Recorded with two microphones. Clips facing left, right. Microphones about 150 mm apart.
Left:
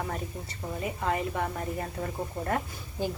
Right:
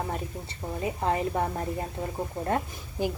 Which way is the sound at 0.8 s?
30° right (ahead or behind).